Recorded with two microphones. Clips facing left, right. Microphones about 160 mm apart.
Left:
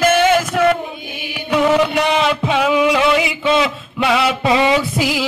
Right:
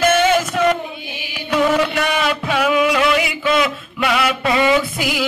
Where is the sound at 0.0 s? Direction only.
10° left (ahead or behind).